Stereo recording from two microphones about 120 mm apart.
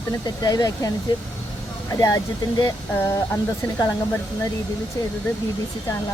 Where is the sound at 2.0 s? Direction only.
30° left (ahead or behind).